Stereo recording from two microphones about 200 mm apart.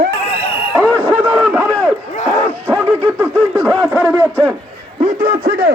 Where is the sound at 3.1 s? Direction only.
10° right (ahead or behind).